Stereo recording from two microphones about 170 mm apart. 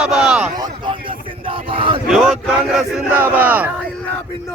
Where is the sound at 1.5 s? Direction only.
30° right (ahead or behind).